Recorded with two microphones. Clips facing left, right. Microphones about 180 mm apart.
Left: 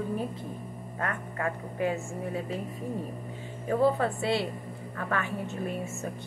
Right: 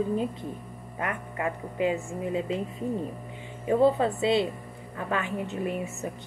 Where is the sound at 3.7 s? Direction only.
20° right (ahead or behind).